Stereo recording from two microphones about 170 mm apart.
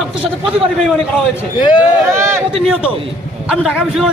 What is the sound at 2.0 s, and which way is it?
Speech, 15° right (ahead or behind).